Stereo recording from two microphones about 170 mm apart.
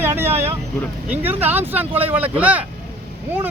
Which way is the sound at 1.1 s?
10° right (ahead or behind).